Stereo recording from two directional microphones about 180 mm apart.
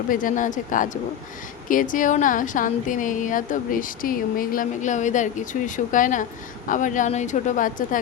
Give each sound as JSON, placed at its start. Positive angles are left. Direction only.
{"t": 0.1, "sound": "a woman's voice", "side_deg": 50}